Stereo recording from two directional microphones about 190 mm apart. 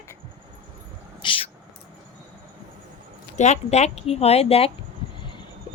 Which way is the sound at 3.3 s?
35° left (ahead or behind).